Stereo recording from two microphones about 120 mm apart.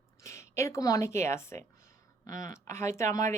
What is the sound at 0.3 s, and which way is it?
A woman's voice, 25° left (ahead or behind).